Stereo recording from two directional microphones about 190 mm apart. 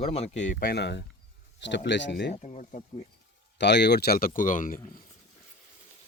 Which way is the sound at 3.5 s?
65° left (ahead or behind).